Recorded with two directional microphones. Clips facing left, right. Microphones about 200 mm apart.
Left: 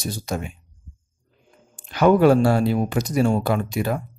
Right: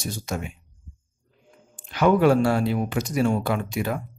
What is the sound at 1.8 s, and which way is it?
Speech, 40° left (ahead or behind).